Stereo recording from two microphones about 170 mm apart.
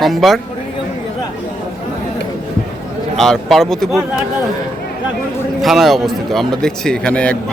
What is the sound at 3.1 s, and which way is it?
Speech, centre (ahead or behind).